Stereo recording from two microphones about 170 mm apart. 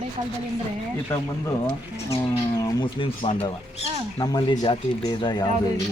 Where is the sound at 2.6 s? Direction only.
25° left (ahead or behind).